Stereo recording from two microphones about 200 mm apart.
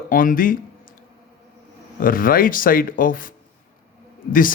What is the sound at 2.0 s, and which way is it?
Speech, 45° left (ahead or behind).